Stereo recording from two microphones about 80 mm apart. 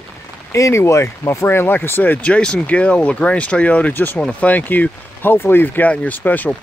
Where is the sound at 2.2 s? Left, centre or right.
Centre.